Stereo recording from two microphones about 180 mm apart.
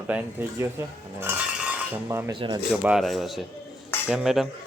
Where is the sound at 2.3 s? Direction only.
25° right (ahead or behind).